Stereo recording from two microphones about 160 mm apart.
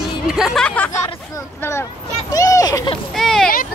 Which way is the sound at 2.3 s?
20° left (ahead or behind).